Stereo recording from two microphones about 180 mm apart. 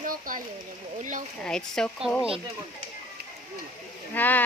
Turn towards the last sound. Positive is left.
turn(degrees=10)  # may be behind; listen again after turning